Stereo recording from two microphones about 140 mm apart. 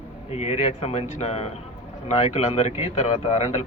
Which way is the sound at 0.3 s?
50° left (ahead or behind).